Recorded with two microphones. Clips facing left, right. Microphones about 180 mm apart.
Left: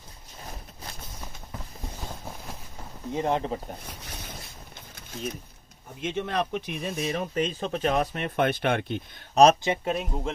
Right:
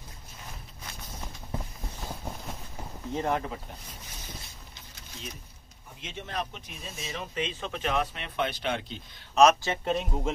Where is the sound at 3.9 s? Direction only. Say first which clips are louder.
Left 5 dB; 65° left (ahead or behind).